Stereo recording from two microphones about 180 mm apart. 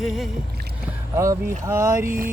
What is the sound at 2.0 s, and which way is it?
Mantra, 50° right (ahead or behind).